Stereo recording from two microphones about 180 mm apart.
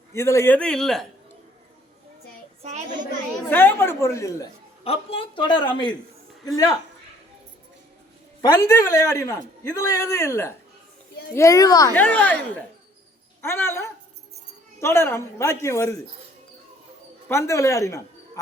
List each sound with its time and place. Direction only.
0.1 s a man's voice: 15° left (ahead or behind)
2.6 s child singing: 35° right (ahead or behind)
3.5 s a man's voice: 10° left (ahead or behind)
4.8 s a woman's voice: 30° left (ahead or behind)
8.4 s a man's voice: 20° left (ahead or behind)
11.9 s a man's voice: 10° left (ahead or behind)
13.4 s a man's voice: 15° left (ahead or behind)
17.2 s a man's voice: 15° left (ahead or behind)